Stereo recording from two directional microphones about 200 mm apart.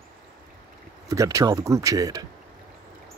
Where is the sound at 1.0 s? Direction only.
15° right (ahead or behind).